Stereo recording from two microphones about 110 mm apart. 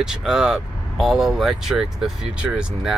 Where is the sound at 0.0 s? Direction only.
5° right (ahead or behind).